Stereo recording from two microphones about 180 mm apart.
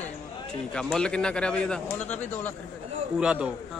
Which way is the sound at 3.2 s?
5° right (ahead or behind).